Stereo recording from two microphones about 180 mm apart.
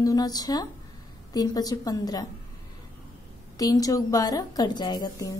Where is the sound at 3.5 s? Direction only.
20° left (ahead or behind).